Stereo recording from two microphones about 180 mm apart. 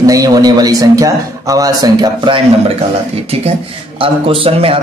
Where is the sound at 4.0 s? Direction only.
30° right (ahead or behind).